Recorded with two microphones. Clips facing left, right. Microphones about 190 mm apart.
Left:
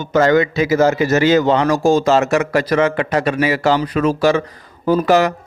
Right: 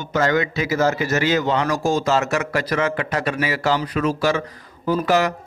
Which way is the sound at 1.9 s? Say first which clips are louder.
Left 6 dB; 75° left (ahead or behind).